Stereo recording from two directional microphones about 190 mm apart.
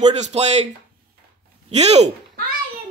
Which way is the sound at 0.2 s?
35° right (ahead or behind).